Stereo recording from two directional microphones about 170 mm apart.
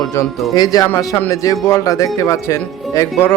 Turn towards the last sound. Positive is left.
turn(degrees=15)  # may be behind; listen again after turning